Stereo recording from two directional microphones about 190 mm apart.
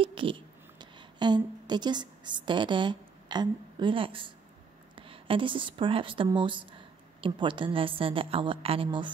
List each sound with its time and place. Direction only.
0.0 s a woman's voice: 25° right (ahead or behind)